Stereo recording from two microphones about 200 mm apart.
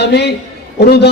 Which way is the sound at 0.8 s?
55° left (ahead or behind).